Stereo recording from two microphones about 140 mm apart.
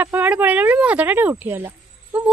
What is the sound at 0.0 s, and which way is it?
Speech, 15° right (ahead or behind).